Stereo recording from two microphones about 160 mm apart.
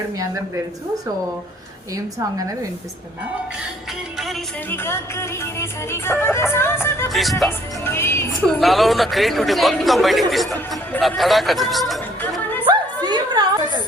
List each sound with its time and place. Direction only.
0.2 s a woman's voice: 20° right (ahead or behind)
4.7 s music: 15° left (ahead or behind)
7.1 s speech: centre (ahead or behind)
7.9 s music: 15° left (ahead or behind)
8.4 s speech: centre (ahead or behind)
12.6 s a sound: 30° right (ahead or behind)